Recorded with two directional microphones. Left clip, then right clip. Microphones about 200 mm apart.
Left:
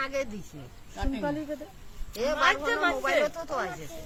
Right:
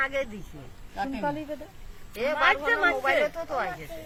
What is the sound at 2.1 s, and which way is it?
Speech, 65° left (ahead or behind).